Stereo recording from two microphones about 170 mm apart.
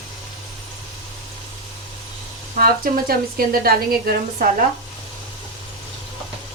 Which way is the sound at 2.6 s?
60° right (ahead or behind).